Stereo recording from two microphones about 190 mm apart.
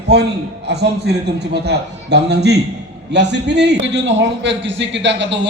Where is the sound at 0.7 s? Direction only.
60° right (ahead or behind).